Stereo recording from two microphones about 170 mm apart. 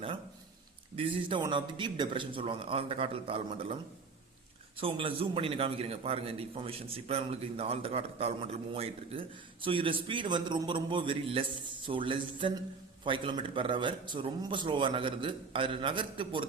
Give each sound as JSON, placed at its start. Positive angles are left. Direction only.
{"t": 0.9, "sound": "a man's voice", "side_deg": -30}
{"t": 4.8, "sound": "a man's voice", "side_deg": -35}